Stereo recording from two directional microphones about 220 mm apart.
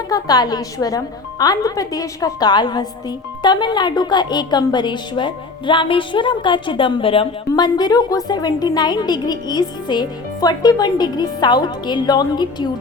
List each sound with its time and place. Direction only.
0.1 s a woman's voice: 15° left (ahead or behind)